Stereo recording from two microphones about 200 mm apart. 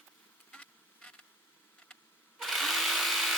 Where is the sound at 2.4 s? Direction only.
Centre (ahead or behind).